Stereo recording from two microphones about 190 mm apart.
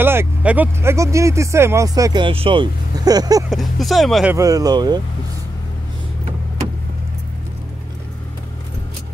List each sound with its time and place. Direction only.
0.0 s speech: 10° right (ahead or behind)
3.4 s speech: centre (ahead or behind)
4.4 s speech: 20° right (ahead or behind)